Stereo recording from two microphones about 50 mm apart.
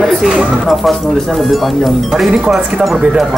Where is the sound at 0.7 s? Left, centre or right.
Centre.